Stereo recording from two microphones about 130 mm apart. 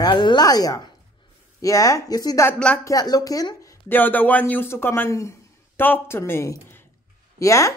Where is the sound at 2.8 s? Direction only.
30° left (ahead or behind).